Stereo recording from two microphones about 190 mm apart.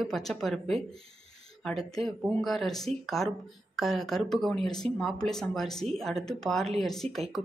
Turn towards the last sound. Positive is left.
turn(degrees=0)  # may be behind; listen again after turning